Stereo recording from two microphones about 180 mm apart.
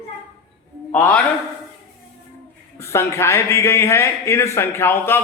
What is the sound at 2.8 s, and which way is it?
A man's voice, 15° left (ahead or behind).